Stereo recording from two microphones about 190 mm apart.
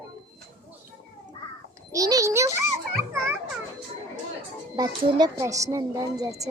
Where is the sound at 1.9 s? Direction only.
20° right (ahead or behind).